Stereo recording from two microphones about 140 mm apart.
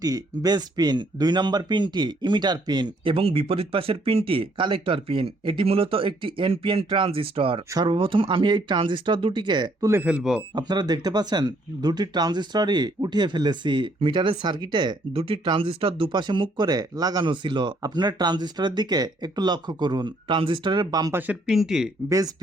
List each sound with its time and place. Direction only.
0.0 s speech: 30° right (ahead or behind)
9.9 s speech: 15° right (ahead or behind)
10.5 s speech: 30° right (ahead or behind)
21.1 s speech: 10° right (ahead or behind)